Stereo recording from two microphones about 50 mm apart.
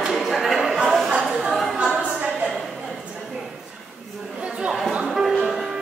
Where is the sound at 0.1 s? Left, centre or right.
Centre.